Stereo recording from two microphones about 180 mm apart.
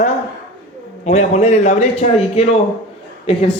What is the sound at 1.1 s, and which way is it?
A man's voice, 40° left (ahead or behind).